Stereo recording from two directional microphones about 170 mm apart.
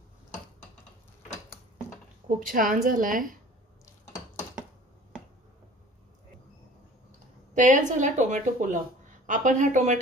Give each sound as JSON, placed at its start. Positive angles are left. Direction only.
{"t": 2.2, "sound": "speech", "side_deg": -55}
{"t": 7.5, "sound": "speech", "side_deg": -45}